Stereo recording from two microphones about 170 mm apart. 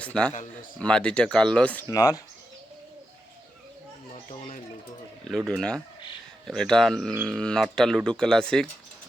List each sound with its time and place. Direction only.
0.0 s speech: 5° left (ahead or behind)
1.9 s speech: 20° left (ahead or behind)
5.5 s speech: 5° left (ahead or behind)